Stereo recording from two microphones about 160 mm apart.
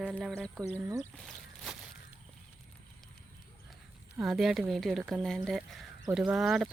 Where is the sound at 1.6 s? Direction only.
5° right (ahead or behind).